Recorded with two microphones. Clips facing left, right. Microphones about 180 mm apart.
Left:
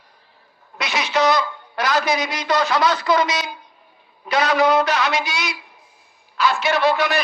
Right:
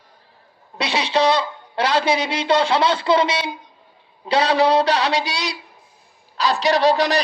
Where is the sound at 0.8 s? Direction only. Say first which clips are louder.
Right 1 dB; 30° right (ahead or behind).